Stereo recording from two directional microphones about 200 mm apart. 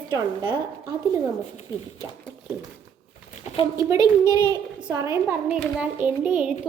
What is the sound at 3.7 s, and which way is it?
A child's voice, 15° right (ahead or behind).